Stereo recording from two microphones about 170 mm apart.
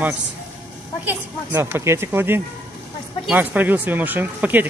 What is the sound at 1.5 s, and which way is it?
Speech, 15° right (ahead or behind).